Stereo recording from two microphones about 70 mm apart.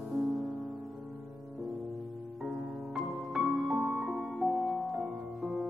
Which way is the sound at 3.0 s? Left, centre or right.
Centre.